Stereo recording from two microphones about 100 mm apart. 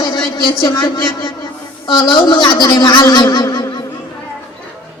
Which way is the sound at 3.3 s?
40° left (ahead or behind).